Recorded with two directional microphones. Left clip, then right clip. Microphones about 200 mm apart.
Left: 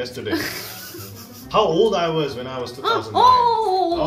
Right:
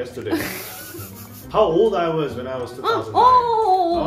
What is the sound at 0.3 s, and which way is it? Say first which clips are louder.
Speech: right 1 dB; 25° right (ahead or behind).